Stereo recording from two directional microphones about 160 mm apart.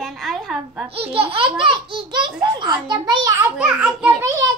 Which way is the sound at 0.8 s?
35° right (ahead or behind).